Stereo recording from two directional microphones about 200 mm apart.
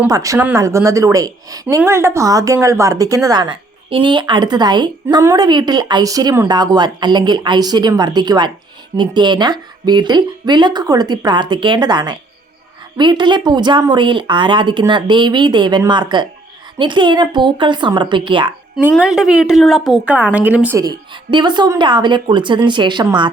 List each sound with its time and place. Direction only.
0.0 s speech: 15° right (ahead or behind)
18.8 s a woman's voice: 5° right (ahead or behind); by 23.3 s 20° right (ahead or behind)